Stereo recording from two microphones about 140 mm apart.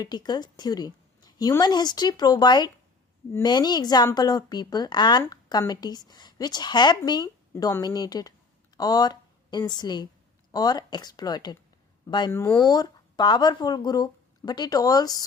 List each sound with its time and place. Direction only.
0.0 s a woman's voice: 30° left (ahead or behind)
12.3 s a woman's voice: 20° left (ahead or behind)
12.5 s a woman's voice: 30° left (ahead or behind)